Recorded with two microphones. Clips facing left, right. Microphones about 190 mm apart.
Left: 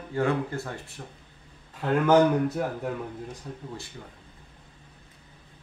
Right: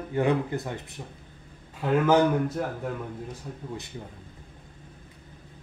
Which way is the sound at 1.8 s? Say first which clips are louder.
Left 1 dB; 5° right (ahead or behind).